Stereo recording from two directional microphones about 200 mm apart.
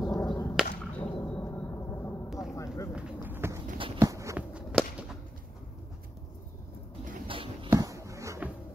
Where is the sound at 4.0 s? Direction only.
15° right (ahead or behind).